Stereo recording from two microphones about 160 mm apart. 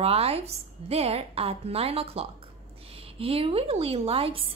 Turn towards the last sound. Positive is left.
turn(degrees=-35)  # may be behind; listen again after turning